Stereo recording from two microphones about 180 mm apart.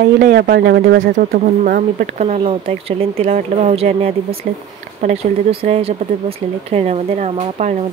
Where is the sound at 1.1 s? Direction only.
45° right (ahead or behind).